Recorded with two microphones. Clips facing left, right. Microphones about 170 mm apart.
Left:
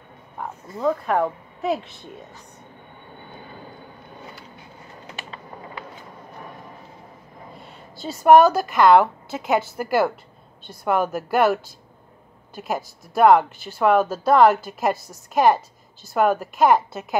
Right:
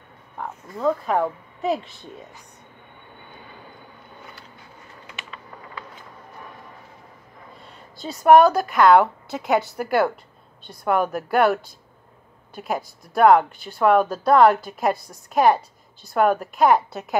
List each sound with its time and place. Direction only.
0.8 s a woman's voice: centre (ahead or behind)
5.0 s typing: 35° left (ahead or behind)
7.9 s a woman's voice: 5° left (ahead or behind)